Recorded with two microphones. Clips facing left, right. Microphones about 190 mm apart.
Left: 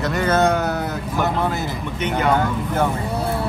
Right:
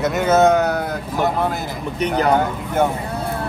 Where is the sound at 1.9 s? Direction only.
35° right (ahead or behind).